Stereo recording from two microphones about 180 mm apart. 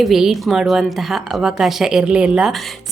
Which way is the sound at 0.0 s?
Centre (ahead or behind).